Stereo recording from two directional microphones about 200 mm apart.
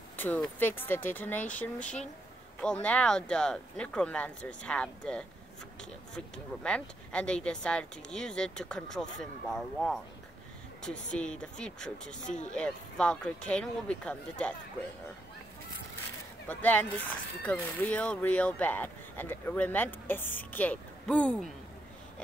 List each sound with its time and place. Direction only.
0.2 s speech: 10° left (ahead or behind)
12.2 s speech: 40° left (ahead or behind)
12.5 s speech: 5° left (ahead or behind)
16.4 s speech: 10° left (ahead or behind)